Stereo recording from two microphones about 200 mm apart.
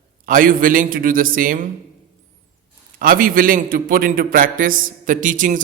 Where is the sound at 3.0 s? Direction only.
45° right (ahead or behind).